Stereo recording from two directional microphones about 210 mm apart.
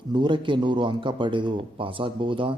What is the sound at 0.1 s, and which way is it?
A man's voice, 20° right (ahead or behind).